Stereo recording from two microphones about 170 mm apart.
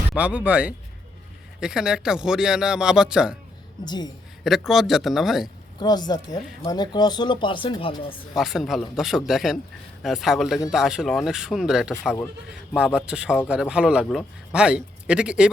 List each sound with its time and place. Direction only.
0.1 s a man's voice: 5° right (ahead or behind)
3.8 s speech: 25° left (ahead or behind)
4.4 s a man's voice: centre (ahead or behind)
5.8 s speech: 25° left (ahead or behind)
8.4 s a man's voice: centre (ahead or behind)